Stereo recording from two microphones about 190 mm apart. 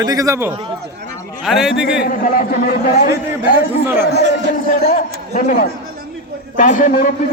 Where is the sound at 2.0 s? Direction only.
50° left (ahead or behind).